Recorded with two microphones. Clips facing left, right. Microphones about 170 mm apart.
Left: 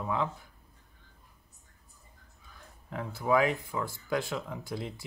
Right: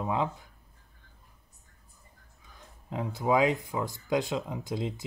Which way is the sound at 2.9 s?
20° right (ahead or behind).